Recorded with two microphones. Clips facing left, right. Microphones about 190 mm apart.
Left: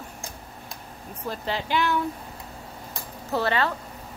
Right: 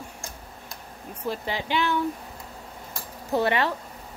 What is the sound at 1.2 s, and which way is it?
Speech, 15° right (ahead or behind).